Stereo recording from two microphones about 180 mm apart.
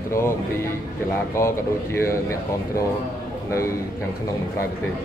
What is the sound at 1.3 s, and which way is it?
Speech, 15° left (ahead or behind).